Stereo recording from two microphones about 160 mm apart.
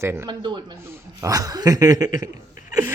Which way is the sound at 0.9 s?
20° right (ahead or behind).